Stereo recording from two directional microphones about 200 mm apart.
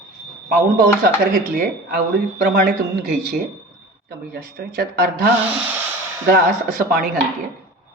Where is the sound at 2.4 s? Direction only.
45° right (ahead or behind).